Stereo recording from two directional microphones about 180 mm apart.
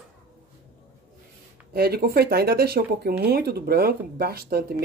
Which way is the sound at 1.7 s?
60° right (ahead or behind).